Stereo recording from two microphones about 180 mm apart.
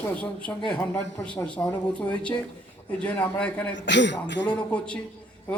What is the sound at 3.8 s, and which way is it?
Speech, 80° left.